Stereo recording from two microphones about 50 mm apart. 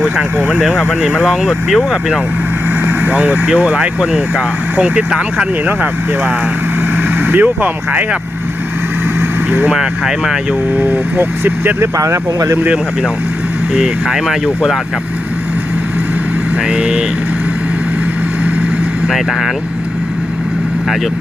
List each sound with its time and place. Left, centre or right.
0.3 s speech: right
0.6 s speech: centre
3.1 s speech: right
5.6 s speech: right
9.7 s speech: centre
10.8 s speech: right
11.8 s speech: right
13.7 s speech: centre
16.6 s speech: right
19.0 s speech: centre